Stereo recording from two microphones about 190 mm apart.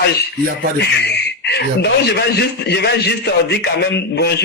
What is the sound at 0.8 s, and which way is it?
A man's voice, 60° left (ahead or behind).